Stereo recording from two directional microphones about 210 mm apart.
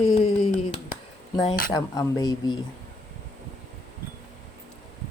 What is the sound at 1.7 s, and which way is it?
Speech, 15° left (ahead or behind).